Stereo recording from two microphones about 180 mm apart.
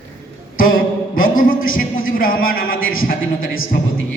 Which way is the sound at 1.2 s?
50° left (ahead or behind).